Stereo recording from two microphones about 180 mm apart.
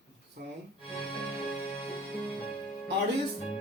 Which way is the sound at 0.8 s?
30° left (ahead or behind).